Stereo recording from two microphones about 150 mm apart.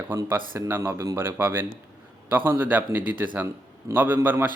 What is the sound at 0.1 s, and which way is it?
Speech, 15° right (ahead or behind).